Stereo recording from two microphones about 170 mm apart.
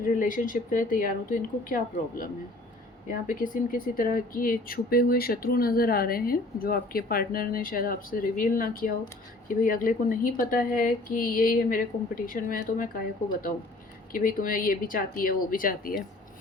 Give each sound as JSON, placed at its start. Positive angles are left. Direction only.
{"t": 0.0, "sound": "speech", "side_deg": 50}
{"t": 14.1, "sound": "speech", "side_deg": 55}